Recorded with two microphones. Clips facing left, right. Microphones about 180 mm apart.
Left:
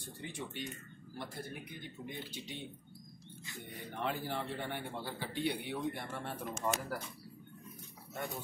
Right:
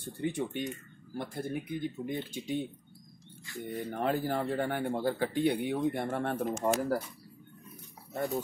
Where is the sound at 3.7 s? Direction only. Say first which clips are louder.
Right 8 dB; 45° right (ahead or behind).